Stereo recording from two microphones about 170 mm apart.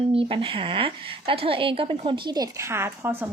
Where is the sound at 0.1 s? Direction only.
30° right (ahead or behind).